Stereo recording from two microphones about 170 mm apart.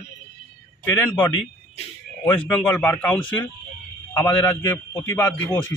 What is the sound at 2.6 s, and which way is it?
Speech, 10° left (ahead or behind).